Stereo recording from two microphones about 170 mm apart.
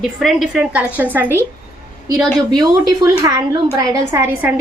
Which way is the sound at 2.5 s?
20° right (ahead or behind).